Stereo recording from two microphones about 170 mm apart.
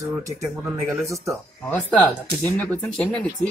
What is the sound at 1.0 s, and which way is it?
Speech, 20° right (ahead or behind).